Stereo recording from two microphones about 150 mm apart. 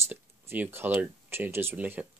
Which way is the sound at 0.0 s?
15° right (ahead or behind).